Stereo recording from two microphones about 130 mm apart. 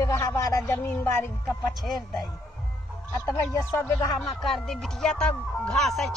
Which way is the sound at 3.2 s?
25° left (ahead or behind).